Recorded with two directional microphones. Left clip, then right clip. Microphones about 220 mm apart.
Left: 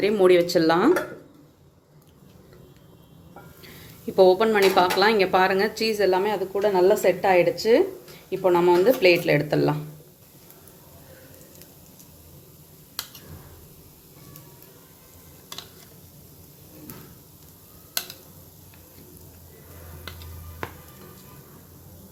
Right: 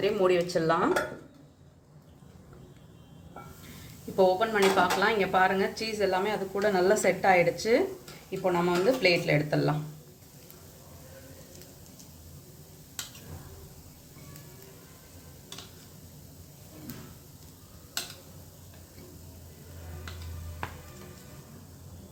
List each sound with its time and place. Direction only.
0.0 s speech: 40° left (ahead or behind)
4.2 s speech: 40° left (ahead or behind)